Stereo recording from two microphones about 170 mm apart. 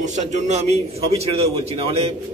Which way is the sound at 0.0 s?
45° right (ahead or behind).